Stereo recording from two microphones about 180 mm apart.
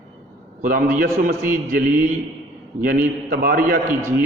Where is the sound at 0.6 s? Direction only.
50° right (ahead or behind).